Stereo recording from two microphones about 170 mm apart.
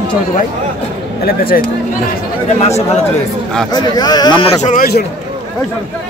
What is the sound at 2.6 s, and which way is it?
Speech, 40° left (ahead or behind).